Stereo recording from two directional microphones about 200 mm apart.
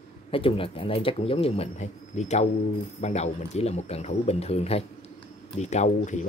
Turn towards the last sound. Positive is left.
turn(degrees=35)  # may be behind; listen again after turning